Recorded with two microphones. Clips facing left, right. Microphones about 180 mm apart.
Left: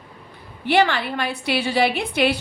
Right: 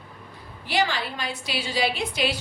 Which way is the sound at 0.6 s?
60° left (ahead or behind).